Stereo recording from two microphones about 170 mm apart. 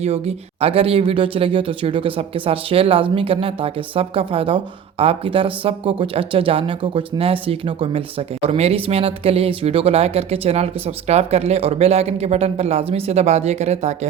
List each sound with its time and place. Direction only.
0.0 s speech: 35° right (ahead or behind)